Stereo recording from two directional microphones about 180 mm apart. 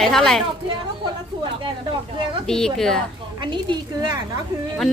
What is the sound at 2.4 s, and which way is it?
Speech, centre (ahead or behind).